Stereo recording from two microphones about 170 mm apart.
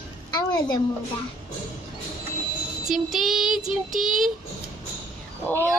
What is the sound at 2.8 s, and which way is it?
A woman's voice, centre (ahead or behind).